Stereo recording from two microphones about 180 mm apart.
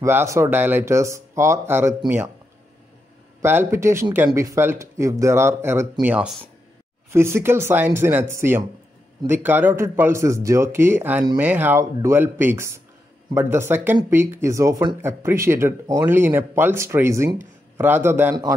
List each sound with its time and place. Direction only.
0.0 s speech: 15° right (ahead or behind)
3.4 s speech: 15° right (ahead or behind)